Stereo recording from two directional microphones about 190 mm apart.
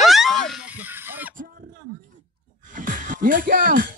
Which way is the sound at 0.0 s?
Centre (ahead or behind).